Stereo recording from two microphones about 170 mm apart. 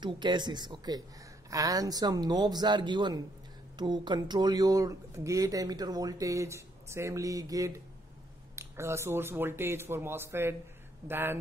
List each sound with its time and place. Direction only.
0.0 s speech: 25° right (ahead or behind)